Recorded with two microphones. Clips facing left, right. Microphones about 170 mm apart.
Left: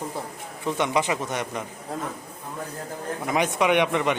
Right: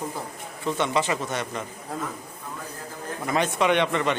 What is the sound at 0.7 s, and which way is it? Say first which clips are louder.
Speech: left 1 dB; 15° left (ahead or behind).